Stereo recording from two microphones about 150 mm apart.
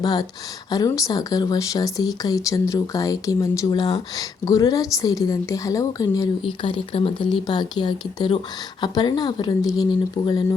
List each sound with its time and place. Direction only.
0.0 s speech: 25° left (ahead or behind)
6.4 s speech: 35° left (ahead or behind)
10.2 s speech: 40° left (ahead or behind)